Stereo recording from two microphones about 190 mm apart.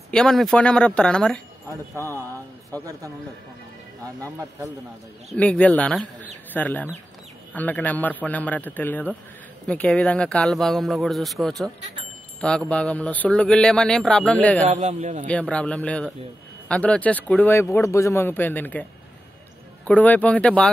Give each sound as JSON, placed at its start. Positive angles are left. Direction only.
{"t": 0.1, "sound": "a man's voice", "side_deg": 0}
{"t": 5.3, "sound": "a man's voice", "side_deg": 5}
{"t": 14.7, "sound": "a man's voice", "side_deg": -35}
{"t": 15.2, "sound": "speech", "side_deg": 5}
{"t": 19.9, "sound": "speech", "side_deg": 10}